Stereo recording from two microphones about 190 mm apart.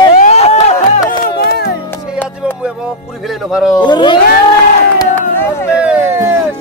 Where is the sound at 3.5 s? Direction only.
Centre (ahead or behind).